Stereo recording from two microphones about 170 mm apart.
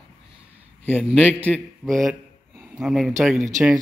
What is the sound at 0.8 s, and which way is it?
A man's voice, 10° left (ahead or behind).